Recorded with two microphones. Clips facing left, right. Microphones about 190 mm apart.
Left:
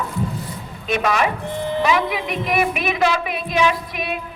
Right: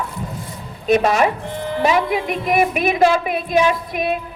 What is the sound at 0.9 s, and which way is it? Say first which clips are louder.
A woman's voice: right 5 dB; 40° right (ahead or behind).